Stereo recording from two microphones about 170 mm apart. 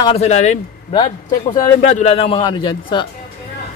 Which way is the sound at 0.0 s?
35° left (ahead or behind).